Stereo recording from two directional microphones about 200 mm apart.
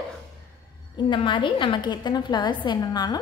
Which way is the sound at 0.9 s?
25° left (ahead or behind).